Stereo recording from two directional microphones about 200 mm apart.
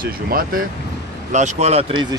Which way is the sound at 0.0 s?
45° right (ahead or behind).